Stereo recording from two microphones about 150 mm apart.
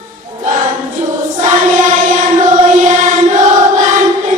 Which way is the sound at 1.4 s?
55° right (ahead or behind).